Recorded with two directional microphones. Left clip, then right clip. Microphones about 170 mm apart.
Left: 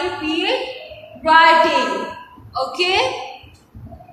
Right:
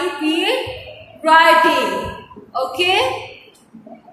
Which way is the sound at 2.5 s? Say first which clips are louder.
Right 1 dB; 35° right (ahead or behind).